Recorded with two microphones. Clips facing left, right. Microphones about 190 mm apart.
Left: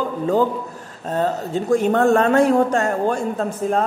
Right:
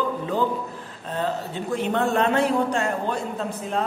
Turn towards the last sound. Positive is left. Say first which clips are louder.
# left 6 dB
turn(degrees=45)  # may be behind; listen again after turning